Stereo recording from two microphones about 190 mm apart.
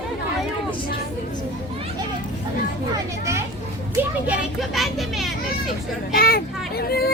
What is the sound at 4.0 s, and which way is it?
A child's voice, 10° right (ahead or behind).